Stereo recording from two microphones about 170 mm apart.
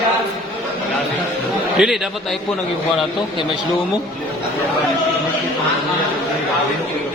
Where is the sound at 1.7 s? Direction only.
Centre (ahead or behind).